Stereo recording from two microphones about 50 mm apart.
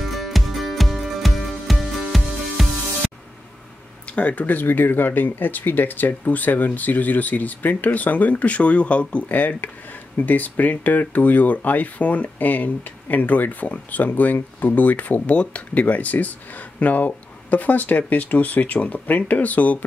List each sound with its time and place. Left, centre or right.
0.0 s music: centre
4.1 s speech: left